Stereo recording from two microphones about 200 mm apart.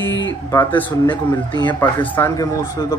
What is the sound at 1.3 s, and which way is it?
Speech, 20° left (ahead or behind).